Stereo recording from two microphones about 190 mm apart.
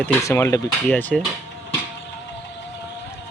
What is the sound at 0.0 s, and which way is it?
Speech, 15° left (ahead or behind).